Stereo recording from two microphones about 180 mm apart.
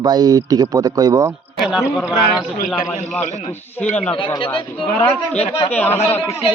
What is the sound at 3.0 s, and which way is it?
Speech, 10° left (ahead or behind).